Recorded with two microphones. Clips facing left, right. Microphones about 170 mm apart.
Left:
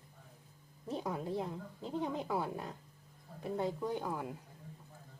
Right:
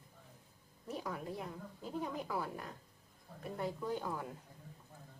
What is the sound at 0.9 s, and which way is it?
A woman's voice, 25° left (ahead or behind).